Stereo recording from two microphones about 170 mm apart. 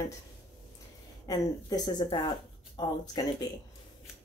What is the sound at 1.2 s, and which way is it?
Speech, 25° left (ahead or behind).